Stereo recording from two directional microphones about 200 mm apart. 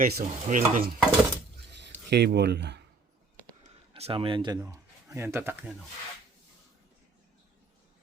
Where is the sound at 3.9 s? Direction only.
25° right (ahead or behind); by 5.7 s 10° right (ahead or behind).